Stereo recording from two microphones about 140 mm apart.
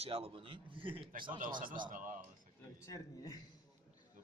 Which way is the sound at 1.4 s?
75° right (ahead or behind).